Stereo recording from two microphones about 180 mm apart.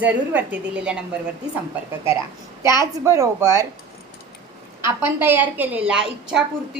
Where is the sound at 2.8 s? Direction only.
15° right (ahead or behind).